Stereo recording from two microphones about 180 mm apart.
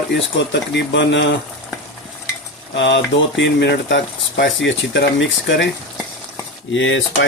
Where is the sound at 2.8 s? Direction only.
80° left.